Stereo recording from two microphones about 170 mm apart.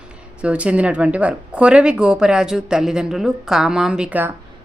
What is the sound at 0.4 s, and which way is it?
Speech, 5° right (ahead or behind).